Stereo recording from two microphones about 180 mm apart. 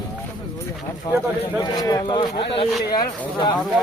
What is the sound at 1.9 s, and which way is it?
Speech, 25° left (ahead or behind).